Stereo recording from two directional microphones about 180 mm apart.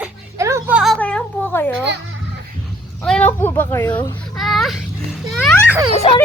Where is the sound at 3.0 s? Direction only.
5° left (ahead or behind).